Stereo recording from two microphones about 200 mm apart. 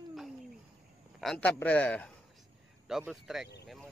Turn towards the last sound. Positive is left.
turn(degrees=0)  # may be behind; listen again after turning